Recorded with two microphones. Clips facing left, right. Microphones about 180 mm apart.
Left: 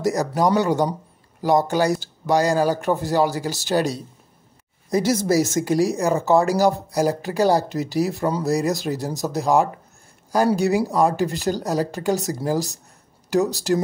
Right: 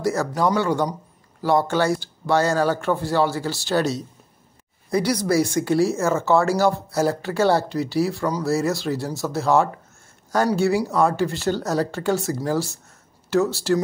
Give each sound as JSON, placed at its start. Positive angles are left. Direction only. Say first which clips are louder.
{"t": 0.0, "sound": "speech", "louder": "left 1 dB", "side_deg": 20}
{"t": 5.1, "sound": "speech", "louder": "even", "side_deg": 25}